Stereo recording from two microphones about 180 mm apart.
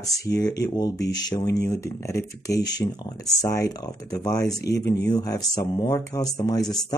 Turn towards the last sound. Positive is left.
turn(degrees=20)  # may be behind; listen again after turning